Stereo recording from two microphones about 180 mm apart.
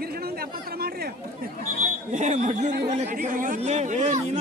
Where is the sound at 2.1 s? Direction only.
40° right (ahead or behind).